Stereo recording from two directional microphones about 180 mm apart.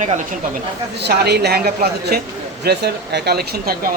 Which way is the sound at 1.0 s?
65° right (ahead or behind).